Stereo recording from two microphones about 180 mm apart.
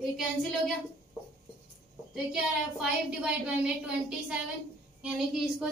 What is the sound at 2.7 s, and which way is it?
Child singing, 5° right (ahead or behind).